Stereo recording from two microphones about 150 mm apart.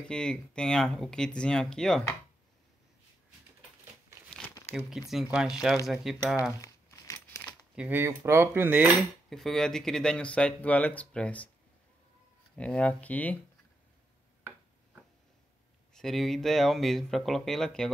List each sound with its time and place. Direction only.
0.0 s speech: 5° left (ahead or behind)
4.7 s speech: centre (ahead or behind)
6.6 s crumpling: 20° left (ahead or behind)
7.7 s speech: 10° right (ahead or behind)
9.3 s speech: centre (ahead or behind)
12.5 s speech: 5° left (ahead or behind)
15.9 s speech: 5° left (ahead or behind)